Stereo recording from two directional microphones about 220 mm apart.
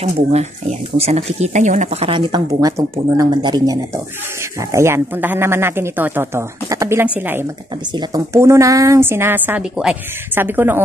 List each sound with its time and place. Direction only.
0.0 s a woman's voice: 30° right (ahead or behind); by 10.8 s 10° right (ahead or behind)